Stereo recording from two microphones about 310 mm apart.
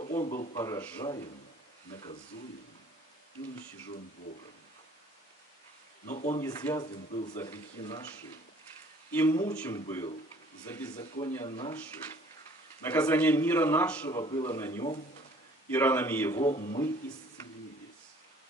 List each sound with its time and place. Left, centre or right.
0.0 s a sound: left
0.6 s a man's voice: centre
6.0 s speech: left
6.4 s a man's voice: centre
9.1 s a man's voice: centre
11.4 s a man's voice: centre
12.8 s a man's voice: centre
16.4 s speech: left